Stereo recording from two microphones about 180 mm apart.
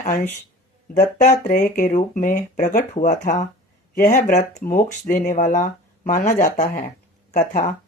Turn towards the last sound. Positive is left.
turn(degrees=45)  # may be behind; listen again after turning